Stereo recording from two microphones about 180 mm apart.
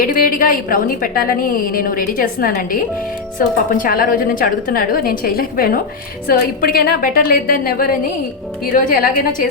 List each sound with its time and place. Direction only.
0.0 s a woman's voice: 50° left (ahead or behind)